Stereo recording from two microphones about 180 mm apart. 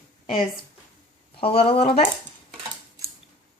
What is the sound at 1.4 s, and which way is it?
Speech, 30° left (ahead or behind).